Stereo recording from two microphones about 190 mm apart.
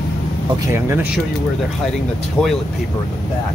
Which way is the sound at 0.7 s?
15° right (ahead or behind).